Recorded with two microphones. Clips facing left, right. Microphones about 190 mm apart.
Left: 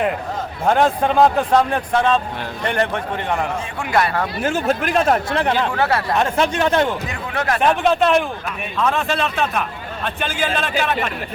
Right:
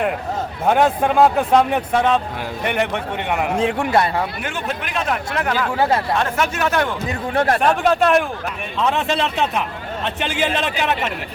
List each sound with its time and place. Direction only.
0.6 s a man's voice: 10° right (ahead or behind); by 4.2 s 25° right (ahead or behind)
4.4 s speech: 45° left (ahead or behind)
5.4 s speech: 25° left (ahead or behind)
5.7 s a man's voice: 15° right (ahead or behind)
6.1 s speech: 25° left (ahead or behind)
7.3 s speech: 35° right (ahead or behind)
7.6 s speech: centre (ahead or behind)
8.8 s speech: 20° right (ahead or behind)